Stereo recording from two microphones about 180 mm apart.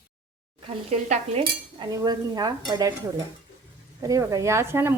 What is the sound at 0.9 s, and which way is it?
Cutlery, 35° right (ahead or behind).